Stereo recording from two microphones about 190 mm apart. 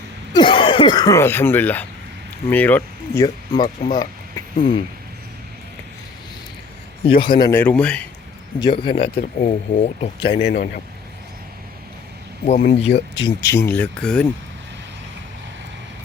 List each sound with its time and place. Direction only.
0.3 s speech: 25° left (ahead or behind); by 3.2 s 10° left (ahead or behind)
3.2 s speech: 20° left (ahead or behind)
3.9 s a sound: 20° left (ahead or behind)
7.0 s speech: 30° left (ahead or behind)
7.6 s speech: 5° left (ahead or behind)
8.5 s speech: 25° left (ahead or behind)
9.2 s speech: 40° left (ahead or behind)
10.4 s speech: 60° left (ahead or behind)
12.5 s speech: 35° left (ahead or behind)
12.9 s speech: 65° left (ahead or behind)
13.2 s speech: 15° left (ahead or behind)